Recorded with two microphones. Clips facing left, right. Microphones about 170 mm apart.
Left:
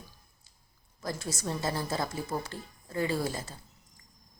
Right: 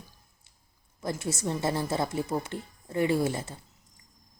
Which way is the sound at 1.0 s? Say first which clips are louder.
Right 4 dB; 25° right (ahead or behind).